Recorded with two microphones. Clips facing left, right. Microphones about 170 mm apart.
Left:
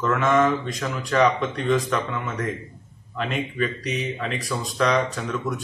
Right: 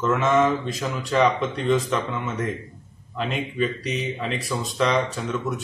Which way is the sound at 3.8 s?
30° right (ahead or behind).